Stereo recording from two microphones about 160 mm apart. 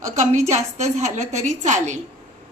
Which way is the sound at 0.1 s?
45° right (ahead or behind).